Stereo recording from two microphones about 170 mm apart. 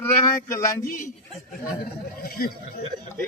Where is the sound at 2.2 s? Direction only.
60° left (ahead or behind).